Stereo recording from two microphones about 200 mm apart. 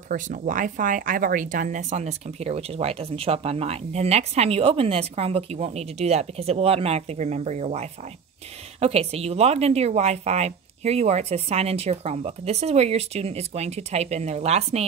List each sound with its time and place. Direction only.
0.1 s speech: 40° right (ahead or behind)